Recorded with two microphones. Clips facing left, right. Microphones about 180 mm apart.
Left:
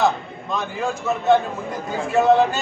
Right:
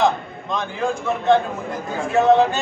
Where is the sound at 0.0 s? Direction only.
5° left (ahead or behind).